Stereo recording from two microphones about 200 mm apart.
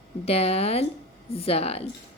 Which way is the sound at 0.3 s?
30° left (ahead or behind).